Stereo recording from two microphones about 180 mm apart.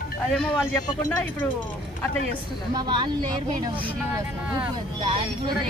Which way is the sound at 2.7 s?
25° right (ahead or behind).